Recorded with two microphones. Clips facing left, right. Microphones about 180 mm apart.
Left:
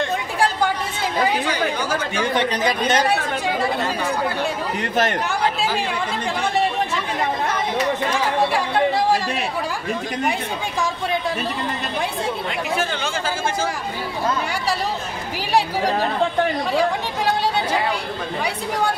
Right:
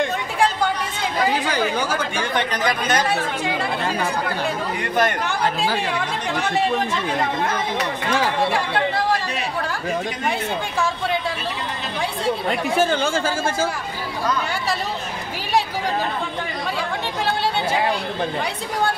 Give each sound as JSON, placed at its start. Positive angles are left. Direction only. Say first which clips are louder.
{"t": 2.3, "sound": "speech", "louder": "left 1 dB", "side_deg": 25}
{"t": 12.4, "sound": "speech", "louder": "right 4 dB", "side_deg": -50}